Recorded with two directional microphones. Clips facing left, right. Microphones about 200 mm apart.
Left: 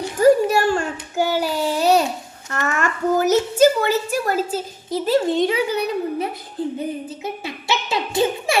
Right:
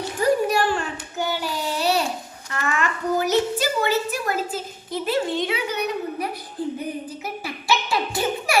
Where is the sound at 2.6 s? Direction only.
45° left (ahead or behind).